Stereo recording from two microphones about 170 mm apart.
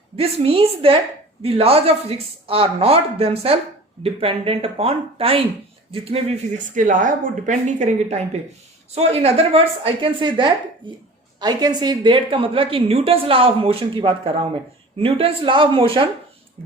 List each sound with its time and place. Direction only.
0.2 s a woman's voice: 35° right (ahead or behind)
6.7 s a woman's voice: 50° right (ahead or behind); by 16.0 s 30° right (ahead or behind)